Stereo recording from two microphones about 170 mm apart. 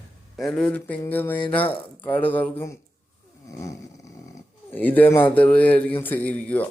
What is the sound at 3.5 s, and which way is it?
Snoring, 20° left (ahead or behind).